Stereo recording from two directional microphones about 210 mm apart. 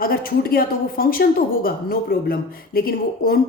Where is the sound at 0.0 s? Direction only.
45° left (ahead or behind).